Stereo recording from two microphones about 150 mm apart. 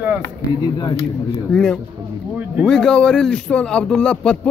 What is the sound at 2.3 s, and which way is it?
Speech, 10° right (ahead or behind).